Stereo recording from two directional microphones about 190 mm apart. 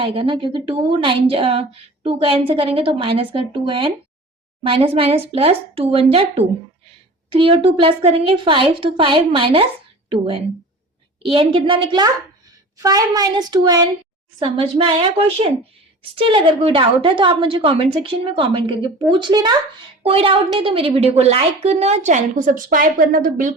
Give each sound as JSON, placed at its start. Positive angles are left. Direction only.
{"t": 0.0, "sound": "a woman's voice", "side_deg": -30}
{"t": 16.1, "sound": "a woman's voice", "side_deg": -25}